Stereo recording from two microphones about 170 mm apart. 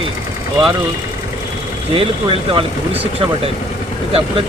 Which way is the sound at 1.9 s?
35° right (ahead or behind).